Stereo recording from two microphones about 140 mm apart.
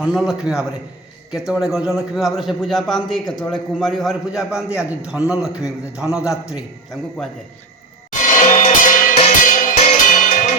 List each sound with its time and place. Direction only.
0.0 s a man's voice: centre (ahead or behind)
8.4 s music: 65° left (ahead or behind)